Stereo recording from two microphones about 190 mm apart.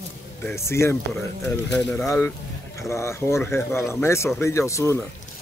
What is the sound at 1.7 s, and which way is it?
Speech, 5° left (ahead or behind).